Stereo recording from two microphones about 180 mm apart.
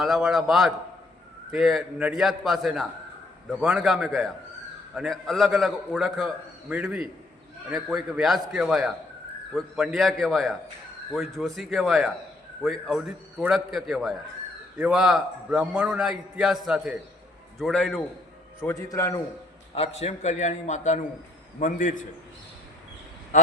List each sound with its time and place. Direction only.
0.0 s a man's voice: 5° right (ahead or behind)
18.6 s a man's voice: 15° left (ahead or behind)
19.7 s a man's voice: 35° left (ahead or behind)
23.3 s a man's voice: 45° left (ahead or behind)